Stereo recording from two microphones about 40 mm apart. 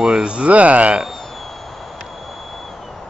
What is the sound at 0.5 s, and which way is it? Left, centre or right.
Speech, right.